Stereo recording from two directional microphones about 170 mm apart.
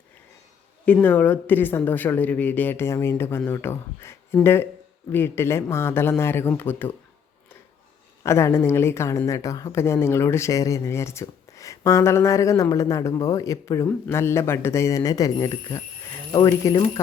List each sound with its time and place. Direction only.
0.9 s a woman's voice: 10° left (ahead or behind)
8.2 s a woman's voice: 15° left (ahead or behind)